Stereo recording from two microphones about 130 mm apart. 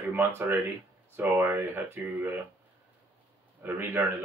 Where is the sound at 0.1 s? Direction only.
15° right (ahead or behind).